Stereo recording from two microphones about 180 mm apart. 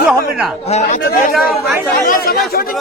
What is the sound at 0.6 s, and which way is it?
Speech, 40° left (ahead or behind).